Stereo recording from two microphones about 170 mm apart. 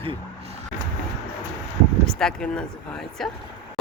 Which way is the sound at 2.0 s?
5° left (ahead or behind).